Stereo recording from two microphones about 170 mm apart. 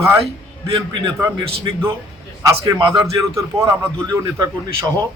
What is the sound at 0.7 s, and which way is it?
Speech, 25° right (ahead or behind).